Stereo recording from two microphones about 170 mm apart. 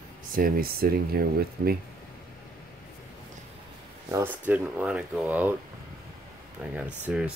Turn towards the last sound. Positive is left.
turn(degrees=-10)  # may be behind; listen again after turning